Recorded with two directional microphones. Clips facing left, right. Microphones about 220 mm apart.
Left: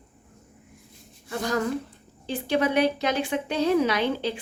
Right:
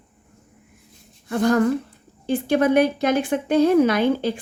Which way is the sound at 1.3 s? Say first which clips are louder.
Right 8 dB; 55° right (ahead or behind).